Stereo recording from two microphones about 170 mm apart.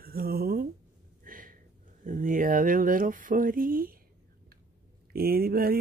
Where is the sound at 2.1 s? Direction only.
55° right (ahead or behind).